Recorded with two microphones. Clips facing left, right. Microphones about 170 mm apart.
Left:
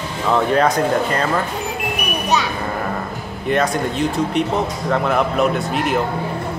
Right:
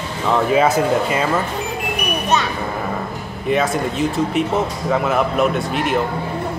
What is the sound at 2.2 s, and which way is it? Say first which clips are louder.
Smoke detector: even; centre (ahead or behind).